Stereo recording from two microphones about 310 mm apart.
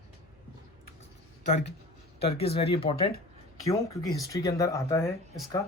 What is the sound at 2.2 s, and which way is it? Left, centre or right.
Speech, centre.